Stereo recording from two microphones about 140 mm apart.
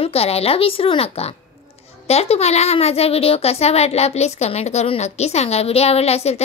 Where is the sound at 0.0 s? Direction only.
45° left (ahead or behind).